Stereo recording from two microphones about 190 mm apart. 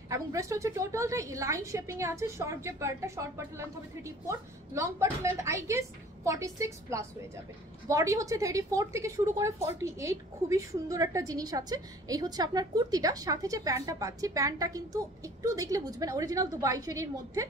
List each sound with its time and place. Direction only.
0.1 s a woman's voice: 15° right (ahead or behind)